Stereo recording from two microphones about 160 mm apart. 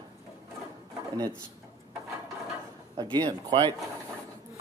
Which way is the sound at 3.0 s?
25° right (ahead or behind).